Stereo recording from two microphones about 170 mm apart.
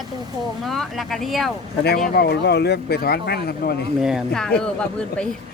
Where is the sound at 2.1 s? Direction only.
70° left (ahead or behind).